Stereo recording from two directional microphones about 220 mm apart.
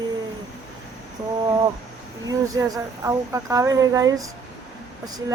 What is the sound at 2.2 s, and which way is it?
A woman's voice, 15° right (ahead or behind).